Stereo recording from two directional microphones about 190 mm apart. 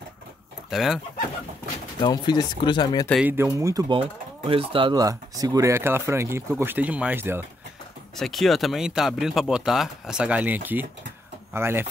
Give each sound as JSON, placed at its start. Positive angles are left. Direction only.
{"t": 0.7, "sound": "speech", "side_deg": 0}
{"t": 2.0, "sound": "speech", "side_deg": 20}
{"t": 3.1, "sound": "speech", "side_deg": -5}
{"t": 8.2, "sound": "speech", "side_deg": 0}